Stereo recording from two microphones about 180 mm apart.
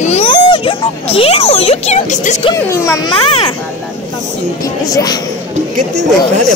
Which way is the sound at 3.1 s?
30° left (ahead or behind).